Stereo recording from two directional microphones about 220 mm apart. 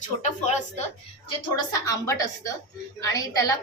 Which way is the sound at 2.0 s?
15° left (ahead or behind).